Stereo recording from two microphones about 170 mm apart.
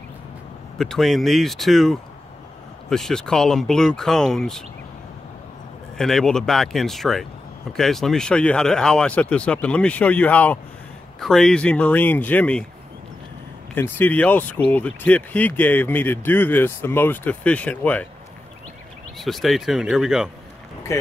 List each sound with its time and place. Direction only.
0.7 s speech: centre (ahead or behind)
5.9 s speech: centre (ahead or behind)
13.7 s speech: 10° left (ahead or behind)
19.1 s speech: centre (ahead or behind)
20.9 s speech: 15° left (ahead or behind)